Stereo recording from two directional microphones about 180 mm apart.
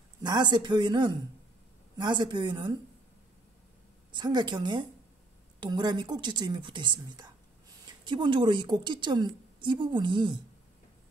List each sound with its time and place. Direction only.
0.2 s a woman's voice: 25° right (ahead or behind)
4.1 s a woman's voice: 25° right (ahead or behind)